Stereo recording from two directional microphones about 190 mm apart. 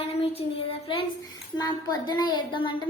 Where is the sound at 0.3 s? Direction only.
30° left (ahead or behind).